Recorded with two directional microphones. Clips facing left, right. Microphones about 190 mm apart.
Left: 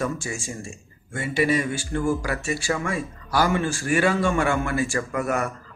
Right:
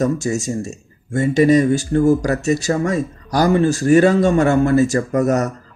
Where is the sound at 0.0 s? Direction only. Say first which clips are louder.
Right 9 dB; 40° right (ahead or behind).